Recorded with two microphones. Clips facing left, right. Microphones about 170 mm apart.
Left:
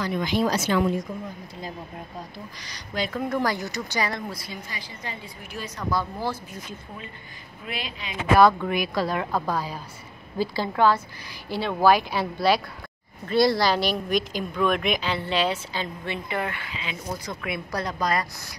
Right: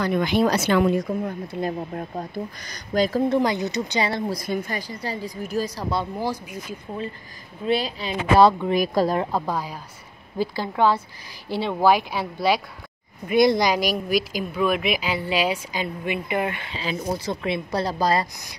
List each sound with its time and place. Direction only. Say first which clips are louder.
0.0 s a woman's voice: right 4 dB; 60° right (ahead or behind); by 3.3 s 35° right (ahead or behind)
3.3 s speech: right 4 dB; 20° right (ahead or behind)
4.1 s a woman's voice: right 6 dB; 35° right (ahead or behind)
4.5 s a woman's voice: right 11 dB; 50° right (ahead or behind); by 6.0 s 30° right (ahead or behind)
6.1 s a woman's voice: right 3 dB; 15° right (ahead or behind)
7.6 s a woman's voice: right 11 dB; 35° right (ahead or behind)
8.7 s speech: right 5 dB; 45° right (ahead or behind)
9.2 s a woman's voice: right 1 dB; 20° right (ahead or behind)
11.4 s a woman's voice: right 1 dB; 25° right (ahead or behind)
16.7 s speech: right 6 dB; 35° right (ahead or behind)